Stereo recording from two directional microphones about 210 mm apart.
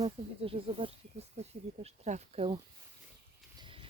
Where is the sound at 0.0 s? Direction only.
25° right (ahead or behind).